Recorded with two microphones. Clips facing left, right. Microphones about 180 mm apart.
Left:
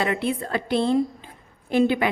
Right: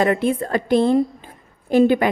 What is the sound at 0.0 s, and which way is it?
A woman's voice, 45° right (ahead or behind).